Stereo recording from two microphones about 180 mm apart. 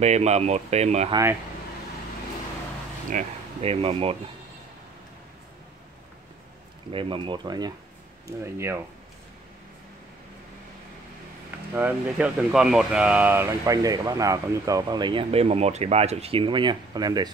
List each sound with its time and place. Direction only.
0.0 s speech: 40° right (ahead or behind)
3.1 s speech: 40° right (ahead or behind)
6.9 s speech: 30° right (ahead or behind)
11.7 s speech: 10° right (ahead or behind)